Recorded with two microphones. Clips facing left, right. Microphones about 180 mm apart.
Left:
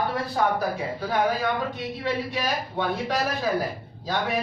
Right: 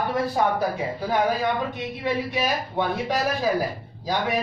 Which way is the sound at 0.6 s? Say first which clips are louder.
Right 2 dB; 20° right (ahead or behind).